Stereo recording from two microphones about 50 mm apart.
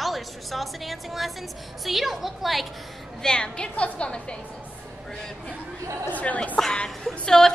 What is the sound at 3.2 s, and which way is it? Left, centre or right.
A woman's voice, centre.